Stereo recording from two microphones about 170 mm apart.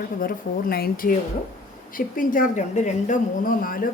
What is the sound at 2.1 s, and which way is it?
Speech, 50° left (ahead or behind).